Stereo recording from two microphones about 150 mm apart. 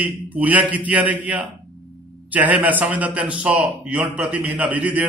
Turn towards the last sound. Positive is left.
turn(degrees=-10)  # may be behind; listen again after turning